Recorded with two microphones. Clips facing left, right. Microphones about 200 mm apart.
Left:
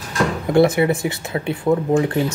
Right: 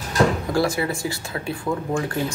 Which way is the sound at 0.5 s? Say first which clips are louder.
Left 7 dB; 25° left (ahead or behind).